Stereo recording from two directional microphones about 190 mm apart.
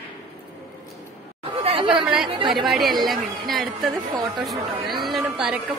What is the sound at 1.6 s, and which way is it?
Chatter, 30° right (ahead or behind).